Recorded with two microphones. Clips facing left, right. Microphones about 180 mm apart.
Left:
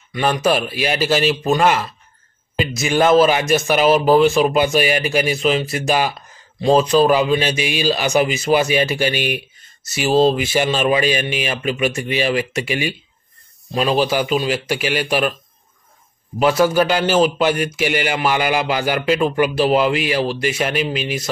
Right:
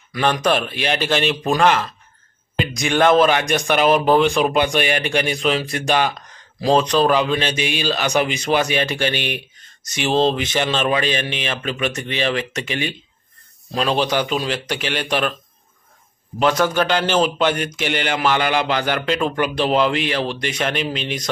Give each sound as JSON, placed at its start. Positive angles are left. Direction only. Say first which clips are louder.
{"t": 0.1, "sound": "a man's voice", "louder": "left 1 dB", "side_deg": 5}
{"t": 16.3, "sound": "a man's voice", "louder": "left 3 dB", "side_deg": 5}